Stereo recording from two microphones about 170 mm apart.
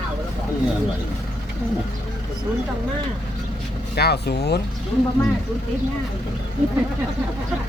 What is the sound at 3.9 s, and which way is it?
Speech, 70° left (ahead or behind).